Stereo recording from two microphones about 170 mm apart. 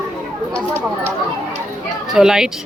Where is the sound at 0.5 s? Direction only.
15° right (ahead or behind).